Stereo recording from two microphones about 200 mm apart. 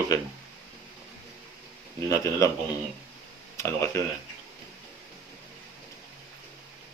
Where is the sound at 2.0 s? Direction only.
15° left (ahead or behind).